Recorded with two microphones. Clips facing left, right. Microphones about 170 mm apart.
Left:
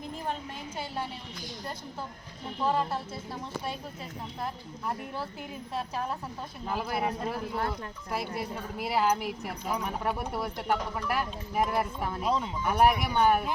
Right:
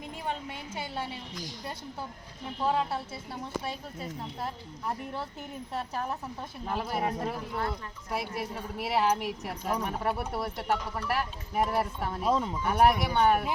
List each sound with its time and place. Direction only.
2.6 s speech: centre (ahead or behind)
6.7 s speech: 5° left (ahead or behind)
12.3 s speech: 40° right (ahead or behind)
12.8 s speech: 5° left (ahead or behind)